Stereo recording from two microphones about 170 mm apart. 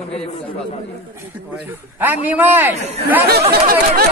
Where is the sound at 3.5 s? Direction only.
60° right (ahead or behind).